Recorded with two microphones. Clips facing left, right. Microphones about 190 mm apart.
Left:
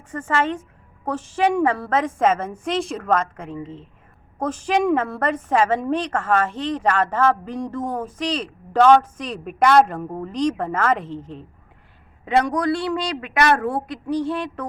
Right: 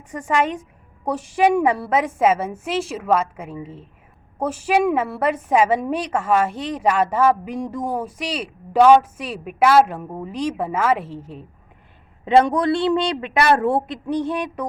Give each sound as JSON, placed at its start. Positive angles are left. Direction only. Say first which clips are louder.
{"t": 0.1, "sound": "a woman's voice", "louder": "right 1 dB", "side_deg": -15}
{"t": 12.2, "sound": "speech", "louder": "right 4 dB", "side_deg": -30}